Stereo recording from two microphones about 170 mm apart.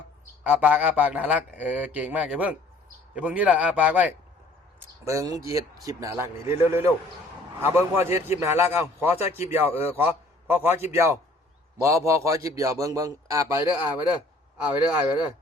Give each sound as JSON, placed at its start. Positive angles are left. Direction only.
{"t": 0.4, "sound": "a man's voice", "side_deg": -10}
{"t": 5.0, "sound": "a man's voice", "side_deg": -20}